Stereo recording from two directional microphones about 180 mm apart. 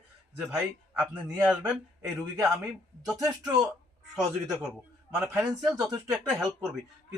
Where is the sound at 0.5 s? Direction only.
10° right (ahead or behind).